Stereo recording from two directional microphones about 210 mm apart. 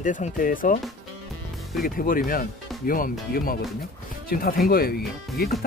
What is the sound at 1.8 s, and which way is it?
Speech, 40° left (ahead or behind).